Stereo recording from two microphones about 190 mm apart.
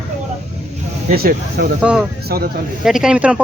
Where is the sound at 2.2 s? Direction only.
55° right (ahead or behind).